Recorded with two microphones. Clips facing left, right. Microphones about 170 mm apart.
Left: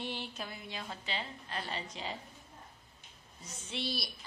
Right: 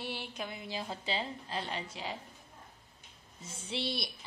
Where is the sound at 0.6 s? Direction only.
30° right (ahead or behind).